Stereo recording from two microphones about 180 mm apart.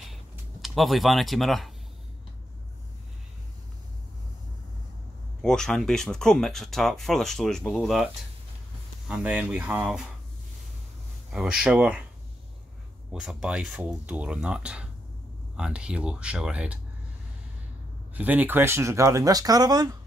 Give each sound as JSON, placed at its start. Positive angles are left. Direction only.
{"t": 0.1, "sound": "a sound", "side_deg": 0}
{"t": 5.4, "sound": "speech", "side_deg": 5}
{"t": 11.3, "sound": "speech", "side_deg": -5}
{"t": 13.1, "sound": "speech", "side_deg": -5}
{"t": 18.1, "sound": "speech", "side_deg": -10}